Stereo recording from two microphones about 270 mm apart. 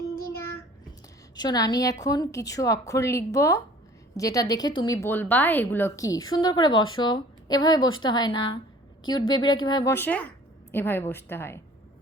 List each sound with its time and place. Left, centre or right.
1.4 s a woman's voice: centre